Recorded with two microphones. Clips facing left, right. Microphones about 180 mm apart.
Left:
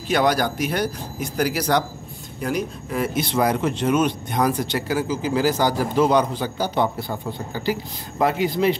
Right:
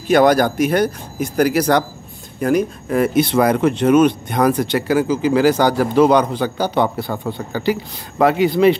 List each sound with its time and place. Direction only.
0.1 s speech: 50° right (ahead or behind); by 8.7 s 70° right (ahead or behind)